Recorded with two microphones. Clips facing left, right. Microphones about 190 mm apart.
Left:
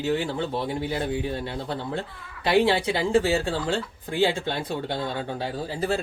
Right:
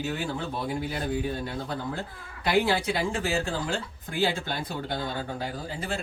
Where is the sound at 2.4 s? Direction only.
30° left (ahead or behind).